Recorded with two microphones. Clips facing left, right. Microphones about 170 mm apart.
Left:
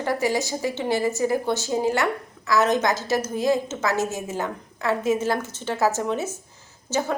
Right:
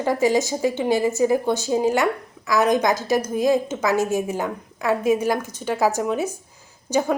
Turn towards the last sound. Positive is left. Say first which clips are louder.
# right 4 dB
turn(degrees=-15)  # may be behind; listen again after turning